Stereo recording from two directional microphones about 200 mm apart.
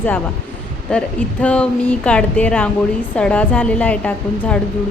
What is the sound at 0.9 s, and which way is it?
Speech, 5° left (ahead or behind).